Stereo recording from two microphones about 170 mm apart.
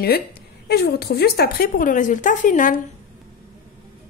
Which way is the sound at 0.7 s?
70° left (ahead or behind).